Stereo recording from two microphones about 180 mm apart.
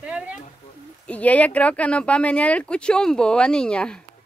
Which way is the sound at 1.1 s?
10° left (ahead or behind).